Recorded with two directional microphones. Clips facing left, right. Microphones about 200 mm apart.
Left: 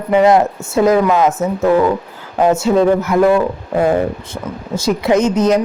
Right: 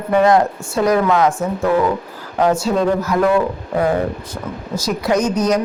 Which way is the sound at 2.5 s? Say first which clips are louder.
Left 5 dB; 25° left (ahead or behind).